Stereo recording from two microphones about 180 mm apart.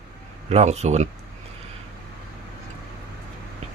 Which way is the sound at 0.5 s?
35° right (ahead or behind).